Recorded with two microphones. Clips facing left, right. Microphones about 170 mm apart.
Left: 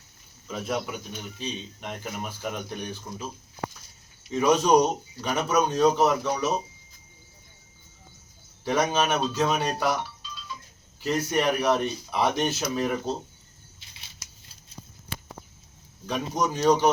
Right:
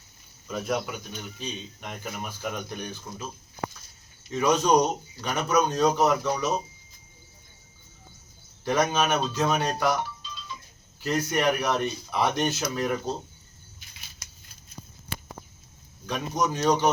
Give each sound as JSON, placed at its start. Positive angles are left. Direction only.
{"t": 0.4, "sound": "speech", "side_deg": 5}
{"t": 4.3, "sound": "speech", "side_deg": 10}
{"t": 8.6, "sound": "speech", "side_deg": 5}
{"t": 11.0, "sound": "speech", "side_deg": 0}
{"t": 13.7, "sound": "scissors", "side_deg": 25}
{"t": 16.0, "sound": "speech", "side_deg": 10}